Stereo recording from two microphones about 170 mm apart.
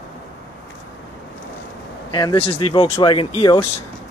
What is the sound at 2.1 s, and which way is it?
Speech, 30° left (ahead or behind).